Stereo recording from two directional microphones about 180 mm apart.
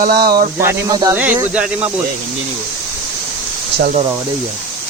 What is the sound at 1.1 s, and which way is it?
Speech, 10° right (ahead or behind).